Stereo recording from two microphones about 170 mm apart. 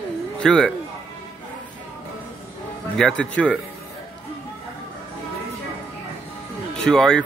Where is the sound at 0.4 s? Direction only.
5° left (ahead or behind).